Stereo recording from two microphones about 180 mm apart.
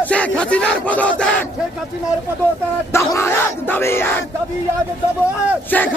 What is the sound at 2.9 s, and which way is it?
Crowd, 15° left (ahead or behind).